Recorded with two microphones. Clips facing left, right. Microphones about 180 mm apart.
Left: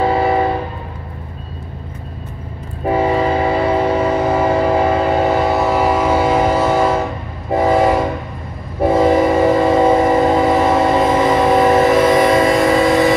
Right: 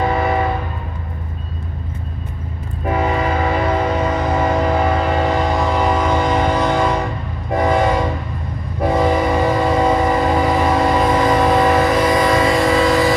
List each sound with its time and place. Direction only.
0.0 s train: 30° left (ahead or behind)
2.8 s train: 30° left (ahead or behind)
5.3 s train: 5° left (ahead or behind)
9.1 s train: 25° left (ahead or behind)